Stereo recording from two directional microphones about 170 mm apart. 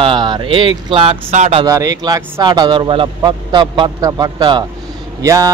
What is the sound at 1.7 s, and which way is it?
A man's voice, 20° right (ahead or behind).